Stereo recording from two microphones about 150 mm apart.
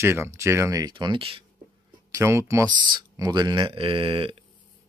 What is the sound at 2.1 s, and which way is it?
Speech, 20° right (ahead or behind).